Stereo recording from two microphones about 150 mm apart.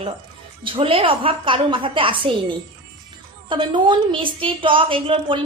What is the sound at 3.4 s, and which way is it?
A woman's voice, 30° right (ahead or behind).